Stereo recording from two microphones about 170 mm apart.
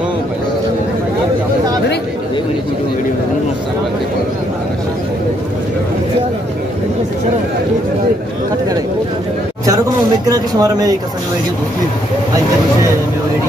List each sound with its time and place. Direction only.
10.2 s speech: 20° right (ahead or behind)